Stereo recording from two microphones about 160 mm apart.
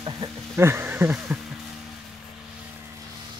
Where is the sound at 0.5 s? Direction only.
15° right (ahead or behind).